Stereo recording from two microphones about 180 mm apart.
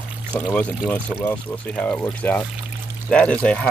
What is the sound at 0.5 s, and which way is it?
Speech, 5° left (ahead or behind).